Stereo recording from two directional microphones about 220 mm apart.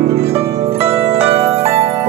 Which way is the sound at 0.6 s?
30° right (ahead or behind).